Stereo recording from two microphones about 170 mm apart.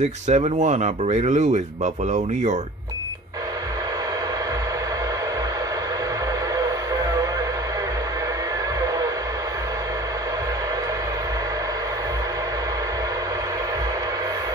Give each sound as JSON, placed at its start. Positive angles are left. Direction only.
{"t": 0.3, "sound": "speech", "side_deg": -45}
{"t": 6.6, "sound": "music", "side_deg": -20}